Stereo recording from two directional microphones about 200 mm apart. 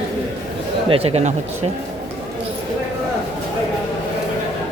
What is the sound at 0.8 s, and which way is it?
Speech, 30° right (ahead or behind).